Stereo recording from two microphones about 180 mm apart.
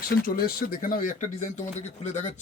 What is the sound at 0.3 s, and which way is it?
Speech, 55° left (ahead or behind).